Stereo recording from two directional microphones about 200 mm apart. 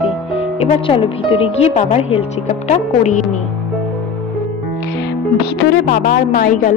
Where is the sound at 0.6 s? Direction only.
25° left (ahead or behind).